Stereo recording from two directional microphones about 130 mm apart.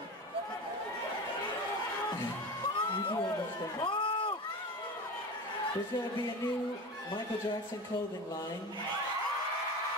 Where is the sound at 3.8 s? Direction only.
40° left (ahead or behind).